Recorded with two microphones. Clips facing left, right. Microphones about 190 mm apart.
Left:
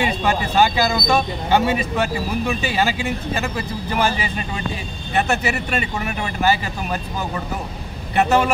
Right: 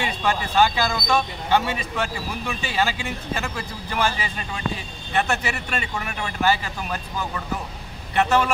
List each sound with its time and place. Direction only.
0.0 s speech: 5° left (ahead or behind)
8.1 s speech: 10° left (ahead or behind)